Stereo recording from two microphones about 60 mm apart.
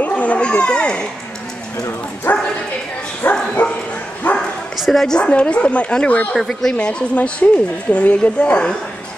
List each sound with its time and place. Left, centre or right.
0.0 s a child's voice: left
2.3 s speech: left
4.2 s bow-wow: left
4.7 s speech: centre
5.0 s a woman's voice: centre
6.3 s speech: centre
6.7 s speech: centre